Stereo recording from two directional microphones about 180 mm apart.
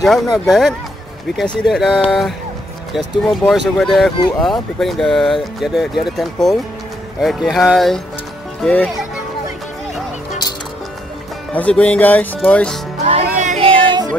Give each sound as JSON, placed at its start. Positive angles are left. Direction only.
{"t": 0.0, "sound": "speech", "side_deg": 0}
{"t": 11.5, "sound": "speech", "side_deg": 5}
{"t": 13.0, "sound": "music", "side_deg": -40}